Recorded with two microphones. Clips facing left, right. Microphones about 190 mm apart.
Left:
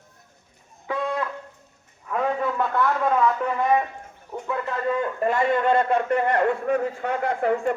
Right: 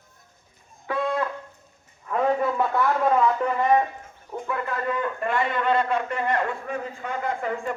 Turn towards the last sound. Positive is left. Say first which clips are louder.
# left 5 dB
turn(degrees=60)  # may be behind; listen again after turning